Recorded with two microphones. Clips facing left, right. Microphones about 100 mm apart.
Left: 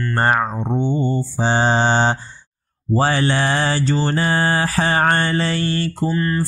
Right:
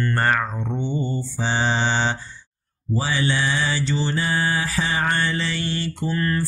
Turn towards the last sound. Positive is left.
turn(degrees=25)  # may be behind; listen again after turning